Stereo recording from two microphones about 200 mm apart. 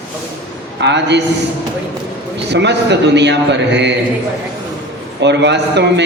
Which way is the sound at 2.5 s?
60° right (ahead or behind).